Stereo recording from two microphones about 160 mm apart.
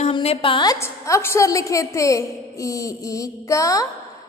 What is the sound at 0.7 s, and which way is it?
Speech, 15° left (ahead or behind).